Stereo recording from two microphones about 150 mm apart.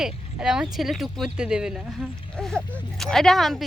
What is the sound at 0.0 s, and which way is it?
Speech, 5° right (ahead or behind).